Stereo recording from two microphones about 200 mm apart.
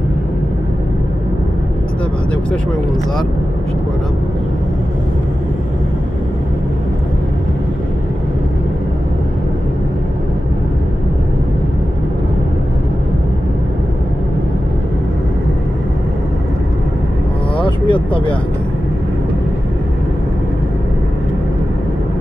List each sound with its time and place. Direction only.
17.6 s vehicle: 25° left (ahead or behind)